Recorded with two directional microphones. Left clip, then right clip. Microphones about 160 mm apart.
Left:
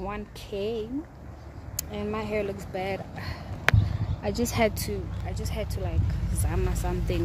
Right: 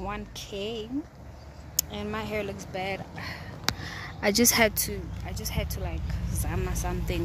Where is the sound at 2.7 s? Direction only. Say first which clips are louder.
Left 1 dB; 10° left (ahead or behind).